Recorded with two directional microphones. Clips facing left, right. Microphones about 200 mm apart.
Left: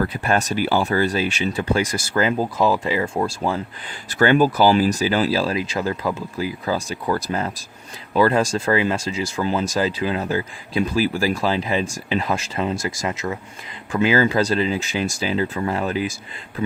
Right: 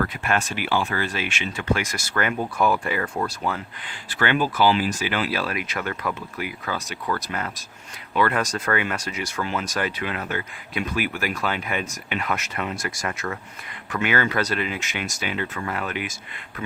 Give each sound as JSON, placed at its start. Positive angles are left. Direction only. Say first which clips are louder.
{"t": 0.0, "sound": "speech", "louder": "left 4 dB", "side_deg": 35}
{"t": 4.1, "sound": "speech", "louder": "left 7 dB", "side_deg": 40}